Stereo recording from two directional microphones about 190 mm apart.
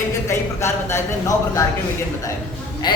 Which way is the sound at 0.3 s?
15° left (ahead or behind).